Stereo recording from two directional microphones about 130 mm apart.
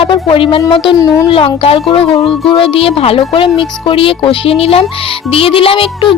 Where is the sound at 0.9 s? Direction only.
25° left (ahead or behind).